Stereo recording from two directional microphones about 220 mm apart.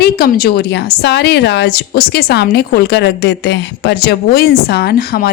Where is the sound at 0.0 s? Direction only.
45° left (ahead or behind).